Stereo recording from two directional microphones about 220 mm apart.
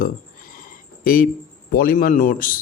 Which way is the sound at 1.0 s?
40° left (ahead or behind).